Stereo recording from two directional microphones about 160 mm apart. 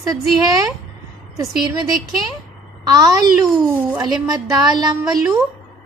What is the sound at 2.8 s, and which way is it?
A child's voice, 25° right (ahead or behind).